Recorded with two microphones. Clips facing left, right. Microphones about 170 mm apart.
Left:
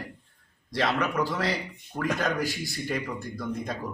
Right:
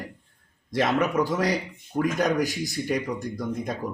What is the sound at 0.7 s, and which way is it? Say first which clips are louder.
Speech: right 4 dB; 20° right (ahead or behind).